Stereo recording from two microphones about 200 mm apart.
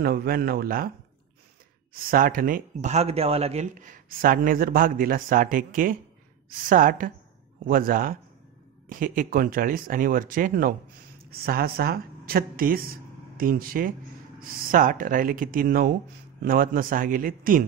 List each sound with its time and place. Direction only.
0.0 s speech: 50° right (ahead or behind)
2.0 s speech: 45° right (ahead or behind)